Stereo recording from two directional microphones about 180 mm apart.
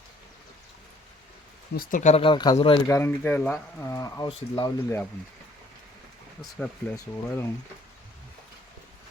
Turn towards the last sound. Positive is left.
turn(degrees=10)  # may be behind; listen again after turning